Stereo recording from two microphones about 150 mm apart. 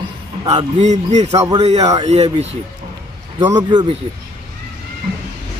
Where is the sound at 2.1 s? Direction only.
45° right (ahead or behind).